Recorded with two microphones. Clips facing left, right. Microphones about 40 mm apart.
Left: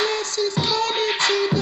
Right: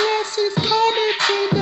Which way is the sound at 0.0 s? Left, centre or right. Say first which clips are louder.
Right 3 dB; centre.